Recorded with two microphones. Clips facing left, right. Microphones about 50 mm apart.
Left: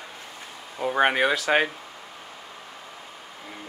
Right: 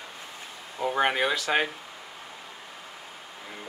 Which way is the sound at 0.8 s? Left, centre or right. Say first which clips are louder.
Left 3 dB; centre.